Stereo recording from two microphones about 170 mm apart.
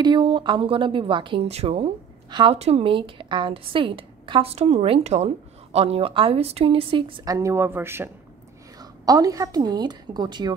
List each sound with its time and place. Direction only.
0.0 s a woman's voice: 30° right (ahead or behind)
7.3 s speech: 15° right (ahead or behind)